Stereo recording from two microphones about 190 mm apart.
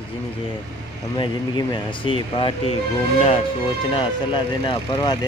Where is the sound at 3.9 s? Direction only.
25° left (ahead or behind).